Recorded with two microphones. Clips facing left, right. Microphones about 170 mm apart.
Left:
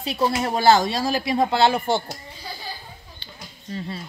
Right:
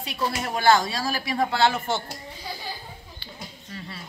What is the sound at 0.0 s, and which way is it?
Speech, 30° left (ahead or behind).